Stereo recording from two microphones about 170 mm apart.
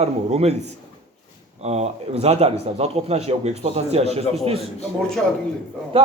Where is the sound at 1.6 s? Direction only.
40° right (ahead or behind).